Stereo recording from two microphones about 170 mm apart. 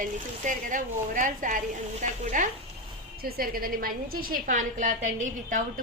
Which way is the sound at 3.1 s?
60° right (ahead or behind).